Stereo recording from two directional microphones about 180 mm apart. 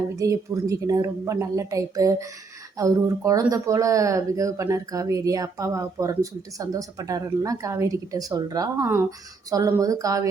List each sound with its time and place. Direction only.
0.2 s a woman's voice: 15° right (ahead or behind)